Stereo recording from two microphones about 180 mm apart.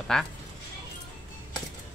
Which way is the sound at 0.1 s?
5° left (ahead or behind).